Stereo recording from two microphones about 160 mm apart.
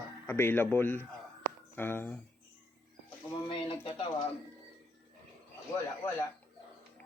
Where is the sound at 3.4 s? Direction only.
30° left (ahead or behind).